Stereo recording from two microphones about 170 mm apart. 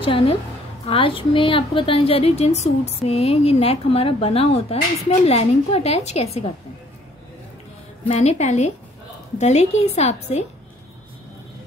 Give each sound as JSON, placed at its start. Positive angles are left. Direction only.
{"t": 0.0, "sound": "a woman's voice", "side_deg": 35}
{"t": 8.1, "sound": "a woman's voice", "side_deg": 40}